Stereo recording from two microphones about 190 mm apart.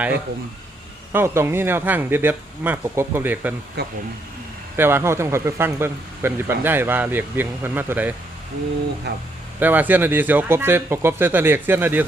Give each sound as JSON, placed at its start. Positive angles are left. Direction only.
{"t": 1.1, "sound": "speech", "side_deg": -15}
{"t": 3.8, "sound": "speech", "side_deg": -60}
{"t": 4.8, "sound": "speech", "side_deg": -10}
{"t": 9.1, "sound": "speech", "side_deg": -60}
{"t": 9.6, "sound": "speech", "side_deg": -10}